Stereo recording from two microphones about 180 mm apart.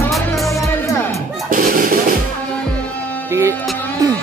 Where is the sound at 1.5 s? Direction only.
50° right (ahead or behind).